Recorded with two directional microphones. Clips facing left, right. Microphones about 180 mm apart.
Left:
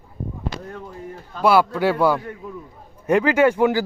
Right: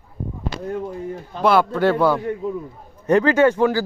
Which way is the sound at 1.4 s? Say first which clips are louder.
Even; 10° left (ahead or behind).